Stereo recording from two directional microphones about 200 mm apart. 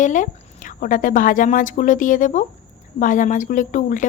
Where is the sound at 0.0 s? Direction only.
40° left (ahead or behind).